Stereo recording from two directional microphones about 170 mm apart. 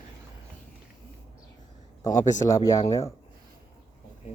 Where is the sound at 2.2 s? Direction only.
20° left (ahead or behind).